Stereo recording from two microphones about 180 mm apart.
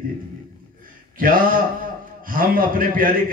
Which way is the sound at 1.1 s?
50° right (ahead or behind).